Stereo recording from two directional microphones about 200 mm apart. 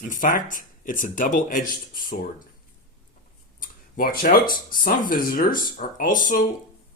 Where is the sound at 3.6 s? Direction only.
45° left (ahead or behind).